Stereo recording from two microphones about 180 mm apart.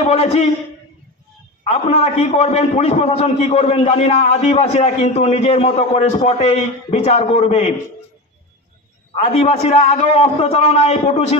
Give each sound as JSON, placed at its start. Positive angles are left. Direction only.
{"t": 0.0, "sound": "a man's voice", "side_deg": 35}
{"t": 1.7, "sound": "a man's voice", "side_deg": 35}
{"t": 9.1, "sound": "a man's voice", "side_deg": 35}